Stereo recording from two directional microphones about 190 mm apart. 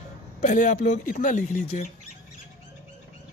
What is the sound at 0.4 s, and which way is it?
Speech, 40° left (ahead or behind).